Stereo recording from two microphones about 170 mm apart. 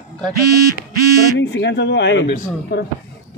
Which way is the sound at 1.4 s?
90° left.